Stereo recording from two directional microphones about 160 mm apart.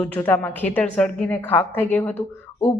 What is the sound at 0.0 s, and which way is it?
Speech, 10° left (ahead or behind).